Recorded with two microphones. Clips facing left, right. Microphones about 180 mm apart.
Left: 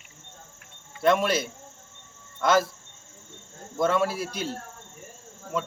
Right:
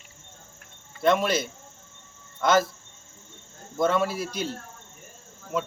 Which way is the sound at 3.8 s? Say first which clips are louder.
Even; centre (ahead or behind).